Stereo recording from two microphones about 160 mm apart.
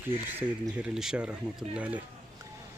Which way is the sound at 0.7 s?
5° right (ahead or behind).